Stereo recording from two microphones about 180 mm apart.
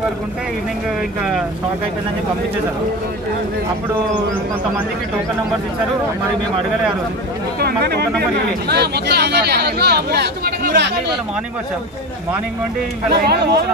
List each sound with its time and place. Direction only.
7.6 s speech: 65° right (ahead or behind)
13.1 s speech: 65° right (ahead or behind)